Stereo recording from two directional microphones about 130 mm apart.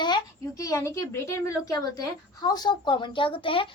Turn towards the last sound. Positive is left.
turn(degrees=40)  # may be behind; listen again after turning